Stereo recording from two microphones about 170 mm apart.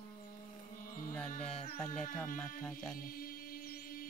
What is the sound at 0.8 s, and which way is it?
Music, 55° left (ahead or behind).